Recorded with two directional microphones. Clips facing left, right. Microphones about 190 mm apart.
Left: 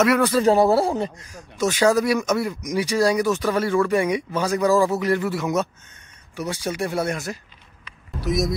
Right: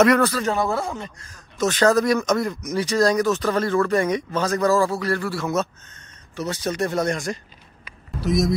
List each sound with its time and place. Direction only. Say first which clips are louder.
0.2 s a man's voice: left 5 dB; 25° left (ahead or behind)
1.2 s speech: even; 10° left (ahead or behind)
7.8 s a sound: right 1 dB; centre (ahead or behind)